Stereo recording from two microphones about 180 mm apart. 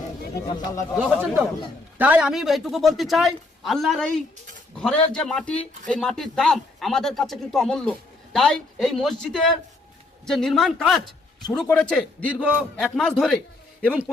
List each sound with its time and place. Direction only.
0.6 s speech: 15° left (ahead or behind)
1.0 s speech: 5° right (ahead or behind)